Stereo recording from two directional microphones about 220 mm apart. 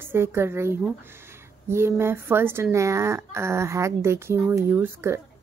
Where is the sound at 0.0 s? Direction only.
10° right (ahead or behind).